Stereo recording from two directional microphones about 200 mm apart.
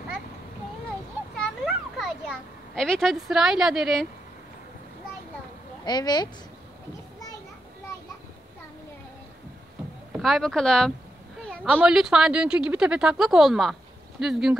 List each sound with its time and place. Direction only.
1.6 s a sound: centre (ahead or behind)
5.9 s speech: 20° left (ahead or behind)
10.1 s speech: centre (ahead or behind)